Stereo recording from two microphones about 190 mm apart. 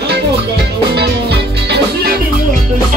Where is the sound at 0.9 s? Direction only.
60° right (ahead or behind).